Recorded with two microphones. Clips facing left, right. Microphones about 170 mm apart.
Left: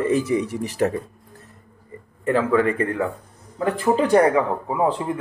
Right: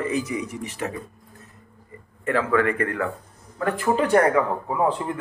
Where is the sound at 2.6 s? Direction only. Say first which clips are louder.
Left 2 dB; 30° left (ahead or behind).